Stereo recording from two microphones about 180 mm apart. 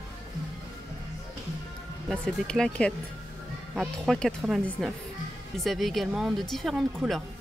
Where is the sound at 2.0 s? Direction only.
5° left (ahead or behind).